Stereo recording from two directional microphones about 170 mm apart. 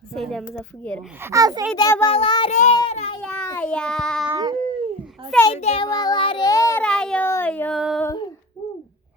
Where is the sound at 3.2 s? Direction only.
10° left (ahead or behind).